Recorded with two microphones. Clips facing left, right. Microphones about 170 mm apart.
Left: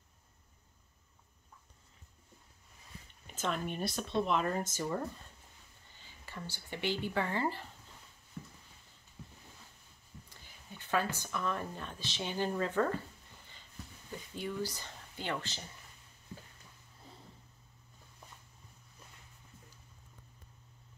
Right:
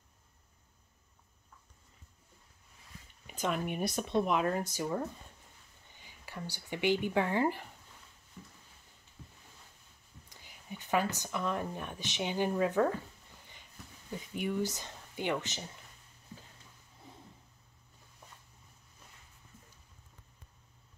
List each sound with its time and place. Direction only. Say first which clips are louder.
3.3 s speech: right 2 dB; 10° right (ahead or behind)
10.3 s speech: right 8 dB; 15° right (ahead or behind)
14.3 s speech: right 4 dB; 15° right (ahead or behind)